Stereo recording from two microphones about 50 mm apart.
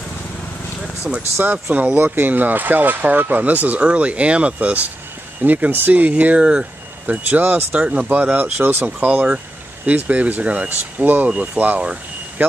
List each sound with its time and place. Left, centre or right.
1.1 s speech: centre
1.4 s speech: right
7.2 s speech: right
7.8 s speech: right
12.4 s speech: right